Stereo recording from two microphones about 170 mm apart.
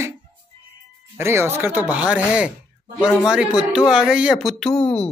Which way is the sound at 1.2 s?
15° right (ahead or behind).